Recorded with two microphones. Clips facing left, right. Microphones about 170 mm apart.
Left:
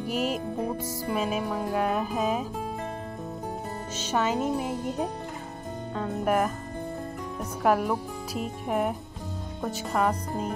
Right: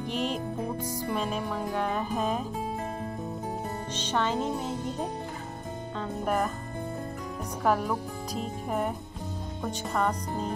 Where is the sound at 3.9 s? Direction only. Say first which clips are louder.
Left 2 dB; 10° left (ahead or behind).